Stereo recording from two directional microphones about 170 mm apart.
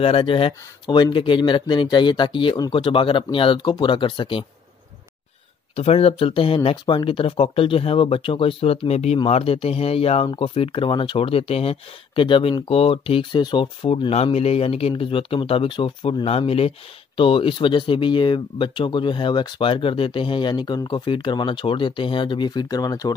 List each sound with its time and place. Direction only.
0.0 s speech: 30° left (ahead or behind)
5.8 s speech: 35° left (ahead or behind)